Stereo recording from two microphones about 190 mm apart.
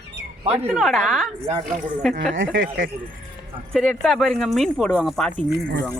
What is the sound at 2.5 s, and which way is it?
Speech, 50° right (ahead or behind).